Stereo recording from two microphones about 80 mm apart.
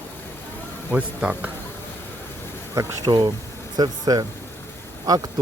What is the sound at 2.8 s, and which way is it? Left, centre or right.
Speech, right.